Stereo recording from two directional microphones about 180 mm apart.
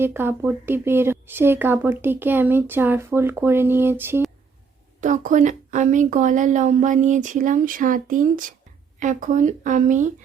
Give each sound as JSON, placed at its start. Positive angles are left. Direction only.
{"t": 0.0, "sound": "speech", "side_deg": -10}
{"t": 4.9, "sound": "a woman's voice", "side_deg": -45}